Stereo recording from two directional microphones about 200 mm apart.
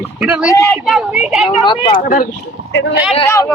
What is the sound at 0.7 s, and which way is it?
Speech, centre (ahead or behind).